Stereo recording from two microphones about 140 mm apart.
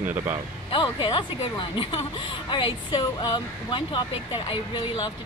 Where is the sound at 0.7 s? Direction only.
35° left (ahead or behind).